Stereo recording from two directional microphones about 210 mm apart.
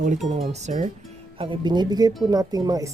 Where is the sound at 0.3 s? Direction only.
30° right (ahead or behind).